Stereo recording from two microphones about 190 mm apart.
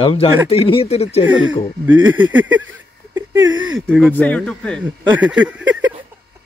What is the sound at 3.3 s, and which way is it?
Speech, 85° right.